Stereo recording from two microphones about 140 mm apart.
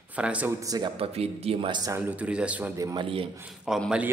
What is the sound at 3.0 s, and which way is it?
Speech, 40° right (ahead or behind).